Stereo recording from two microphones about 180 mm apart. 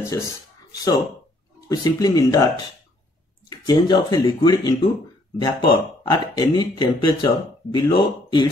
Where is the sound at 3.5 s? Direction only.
20° left (ahead or behind).